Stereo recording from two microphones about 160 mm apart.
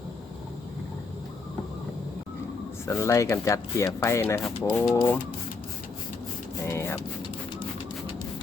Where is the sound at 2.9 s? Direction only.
15° left (ahead or behind).